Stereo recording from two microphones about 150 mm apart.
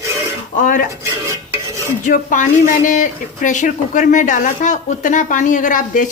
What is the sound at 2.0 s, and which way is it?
A man's voice, 60° left (ahead or behind).